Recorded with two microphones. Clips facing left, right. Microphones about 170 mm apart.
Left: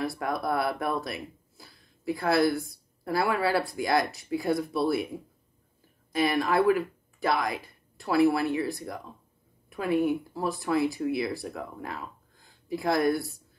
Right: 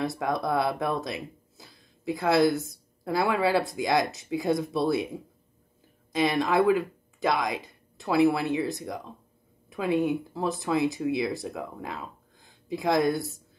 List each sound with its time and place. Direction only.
0.0 s speech: 20° right (ahead or behind)
6.1 s speech: 20° right (ahead or behind)